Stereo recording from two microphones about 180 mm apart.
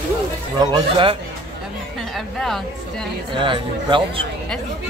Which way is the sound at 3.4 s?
25° right (ahead or behind).